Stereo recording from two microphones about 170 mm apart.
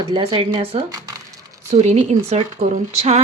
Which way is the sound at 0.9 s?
20° right (ahead or behind).